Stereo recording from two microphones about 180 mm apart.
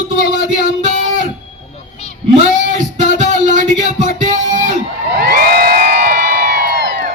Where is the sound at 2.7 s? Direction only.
45° right (ahead or behind).